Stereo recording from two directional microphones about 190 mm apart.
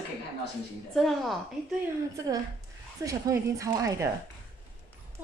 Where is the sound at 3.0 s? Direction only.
15° right (ahead or behind).